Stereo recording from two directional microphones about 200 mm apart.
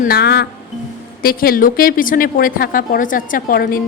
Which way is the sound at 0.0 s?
50° left (ahead or behind).